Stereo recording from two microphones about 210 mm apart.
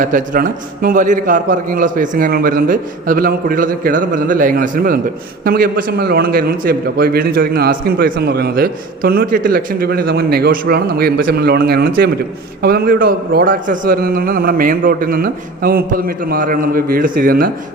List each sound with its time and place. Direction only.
0.0 s a man's voice: 40° right (ahead or behind)